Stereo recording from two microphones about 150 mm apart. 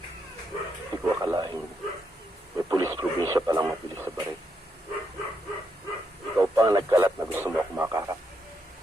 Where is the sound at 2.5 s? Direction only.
20° right (ahead or behind).